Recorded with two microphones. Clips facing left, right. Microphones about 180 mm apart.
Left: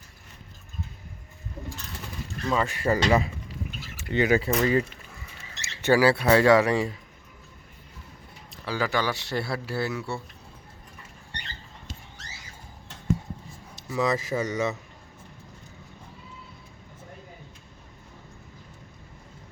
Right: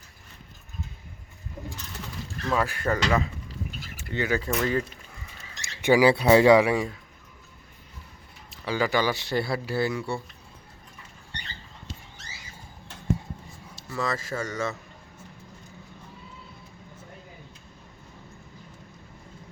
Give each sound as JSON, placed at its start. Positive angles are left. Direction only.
{"t": 2.5, "sound": "speech", "side_deg": 0}
{"t": 5.6, "sound": "speech", "side_deg": -15}
{"t": 6.7, "sound": "speech", "side_deg": 0}
{"t": 8.6, "sound": "speech", "side_deg": 0}
{"t": 13.9, "sound": "speech", "side_deg": 20}